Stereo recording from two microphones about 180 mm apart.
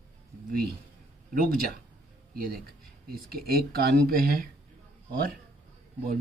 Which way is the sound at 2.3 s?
55° right (ahead or behind).